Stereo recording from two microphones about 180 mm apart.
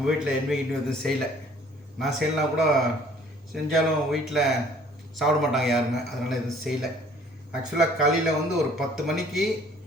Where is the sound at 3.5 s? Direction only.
Centre (ahead or behind).